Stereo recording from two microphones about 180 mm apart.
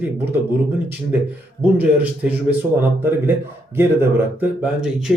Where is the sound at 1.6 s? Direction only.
10° right (ahead or behind).